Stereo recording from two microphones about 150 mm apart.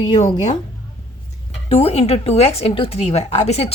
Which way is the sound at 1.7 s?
45° left (ahead or behind).